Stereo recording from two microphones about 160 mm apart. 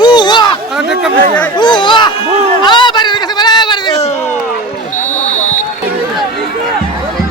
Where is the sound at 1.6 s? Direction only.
30° left (ahead or behind).